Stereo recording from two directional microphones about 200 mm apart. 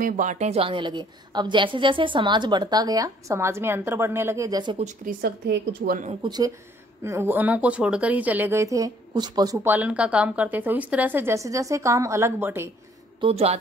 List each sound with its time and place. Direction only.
0.0 s a woman's voice: 40° right (ahead or behind); by 4.7 s 20° right (ahead or behind)
4.7 s a woman's voice: 40° right (ahead or behind)
6.2 s a woman's voice: 20° right (ahead or behind)
13.2 s a woman's voice: 30° right (ahead or behind)